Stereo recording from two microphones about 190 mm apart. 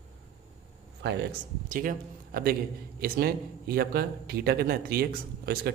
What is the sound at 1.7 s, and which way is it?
A man's voice, 45° right (ahead or behind).